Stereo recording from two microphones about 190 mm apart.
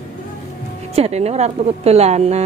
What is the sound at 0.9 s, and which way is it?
A woman's voice, 35° right (ahead or behind).